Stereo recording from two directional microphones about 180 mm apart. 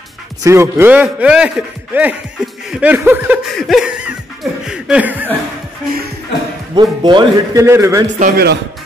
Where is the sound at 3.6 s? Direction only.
Centre (ahead or behind).